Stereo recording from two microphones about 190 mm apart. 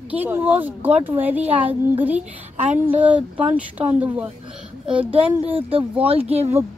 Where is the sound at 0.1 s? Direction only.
10° right (ahead or behind).